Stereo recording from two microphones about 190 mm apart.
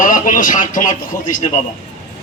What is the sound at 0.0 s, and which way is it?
Speech, 45° left (ahead or behind).